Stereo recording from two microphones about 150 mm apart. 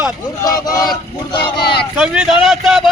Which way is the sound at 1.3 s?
90° left.